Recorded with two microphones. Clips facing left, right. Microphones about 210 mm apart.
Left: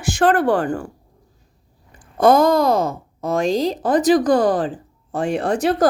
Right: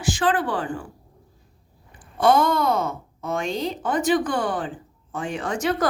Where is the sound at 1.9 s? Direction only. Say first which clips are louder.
Left 5 dB; 40° left (ahead or behind).